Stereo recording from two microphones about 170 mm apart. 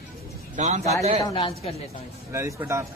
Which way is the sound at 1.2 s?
30° left (ahead or behind).